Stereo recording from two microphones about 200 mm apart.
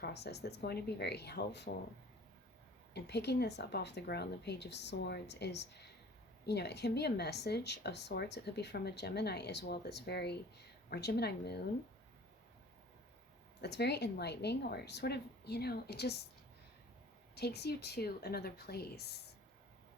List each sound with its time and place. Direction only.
0.0 s speech: 55° left (ahead or behind)
2.9 s speech: 55° left (ahead or behind)
13.6 s speech: 55° left (ahead or behind)
17.3 s a woman's voice: 55° left (ahead or behind)